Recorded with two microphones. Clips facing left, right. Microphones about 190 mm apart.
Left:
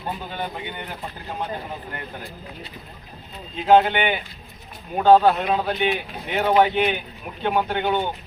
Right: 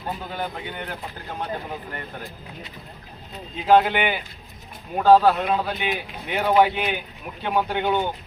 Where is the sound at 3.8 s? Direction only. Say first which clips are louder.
Left 1 dB; 5° right (ahead or behind).